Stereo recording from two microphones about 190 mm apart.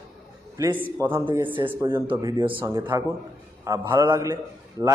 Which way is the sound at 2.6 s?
15° right (ahead or behind).